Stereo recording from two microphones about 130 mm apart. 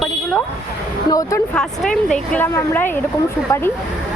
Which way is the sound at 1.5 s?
5° left (ahead or behind).